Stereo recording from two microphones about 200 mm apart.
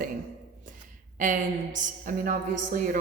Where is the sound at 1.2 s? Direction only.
40° right (ahead or behind).